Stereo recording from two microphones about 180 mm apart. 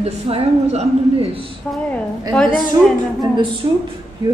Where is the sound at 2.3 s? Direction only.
5° left (ahead or behind).